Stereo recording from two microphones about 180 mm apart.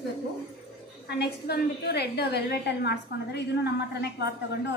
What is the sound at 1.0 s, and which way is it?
A woman's voice, 65° left (ahead or behind).